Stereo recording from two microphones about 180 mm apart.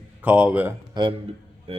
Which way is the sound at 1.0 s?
25° right (ahead or behind).